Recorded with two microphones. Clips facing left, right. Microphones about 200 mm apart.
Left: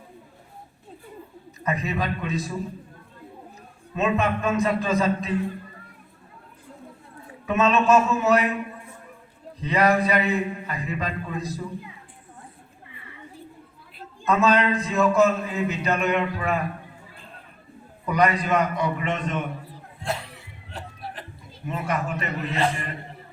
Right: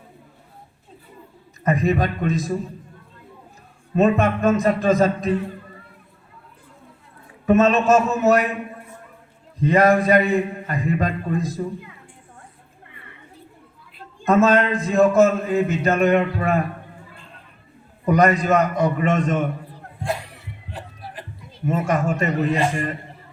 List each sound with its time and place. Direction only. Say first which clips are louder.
1.6 s speech: right 7 dB; 45° right (ahead or behind)
3.9 s speech: right 6 dB; 45° right (ahead or behind)
7.4 s speech: right 5 dB; 45° right (ahead or behind)
9.6 s speech: right 5 dB; 45° right (ahead or behind)
14.3 s speech: right 4 dB; 45° right (ahead or behind)
18.0 s speech: right 5 dB; 45° right (ahead or behind)
21.7 s speech: right 6 dB; 45° right (ahead or behind)